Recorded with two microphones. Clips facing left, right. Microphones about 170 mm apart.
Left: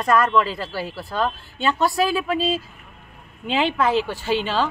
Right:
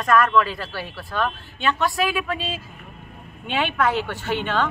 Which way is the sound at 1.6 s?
35° left (ahead or behind).